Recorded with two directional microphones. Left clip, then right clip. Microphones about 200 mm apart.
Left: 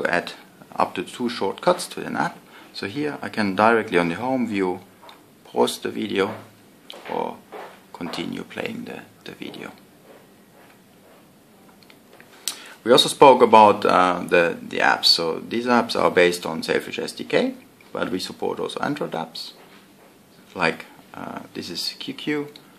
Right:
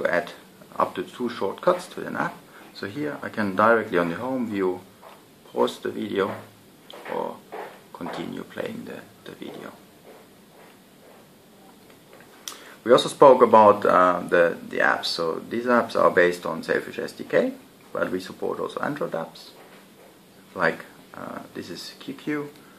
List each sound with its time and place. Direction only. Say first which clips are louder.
0.0 s a sound: left 1 dB; 45° left (ahead or behind)
0.7 s speech: left 2 dB; 50° left (ahead or behind)
8.0 s speech: left 3 dB; 45° left (ahead or behind)
12.4 s speech: left 1 dB; 45° left (ahead or behind)
20.5 s speech: left 1 dB; 40° left (ahead or behind)